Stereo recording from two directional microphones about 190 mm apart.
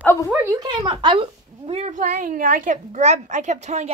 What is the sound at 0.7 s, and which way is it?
A woman's voice, 25° right (ahead or behind).